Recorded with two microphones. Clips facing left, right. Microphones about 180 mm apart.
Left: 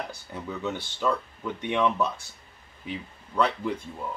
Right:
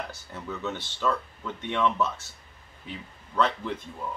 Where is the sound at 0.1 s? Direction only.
15° left (ahead or behind).